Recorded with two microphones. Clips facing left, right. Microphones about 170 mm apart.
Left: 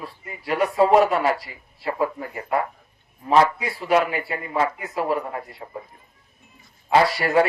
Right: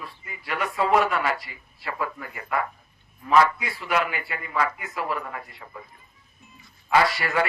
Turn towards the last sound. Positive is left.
turn(degrees=35)  # may be behind; listen again after turning